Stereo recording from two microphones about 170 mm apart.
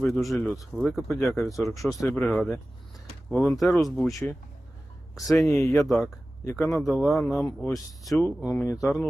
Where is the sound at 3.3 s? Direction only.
10° left (ahead or behind).